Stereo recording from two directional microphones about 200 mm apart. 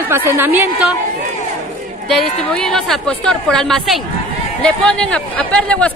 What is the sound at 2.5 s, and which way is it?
A woman's voice, 5° left (ahead or behind).